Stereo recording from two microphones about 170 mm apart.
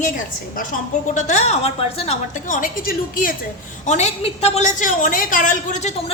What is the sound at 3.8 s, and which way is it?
A woman's voice, 45° left (ahead or behind).